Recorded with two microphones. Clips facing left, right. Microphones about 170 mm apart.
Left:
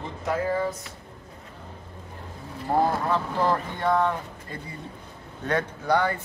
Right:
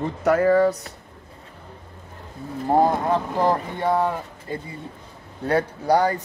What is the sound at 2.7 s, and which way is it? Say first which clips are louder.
Speech: right 4 dB; 20° right (ahead or behind).